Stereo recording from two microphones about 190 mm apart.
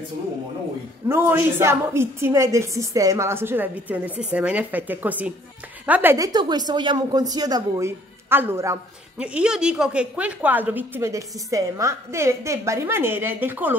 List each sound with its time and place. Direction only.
1.0 s a woman's voice: 10° right (ahead or behind)